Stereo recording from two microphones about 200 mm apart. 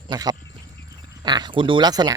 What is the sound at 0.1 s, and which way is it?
Speech, 20° right (ahead or behind).